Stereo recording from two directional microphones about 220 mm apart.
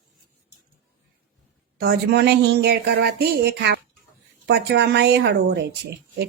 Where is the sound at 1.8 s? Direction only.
50° right (ahead or behind).